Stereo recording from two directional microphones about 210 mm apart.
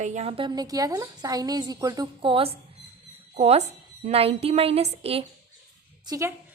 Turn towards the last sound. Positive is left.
turn(degrees=-15)  # may be behind; listen again after turning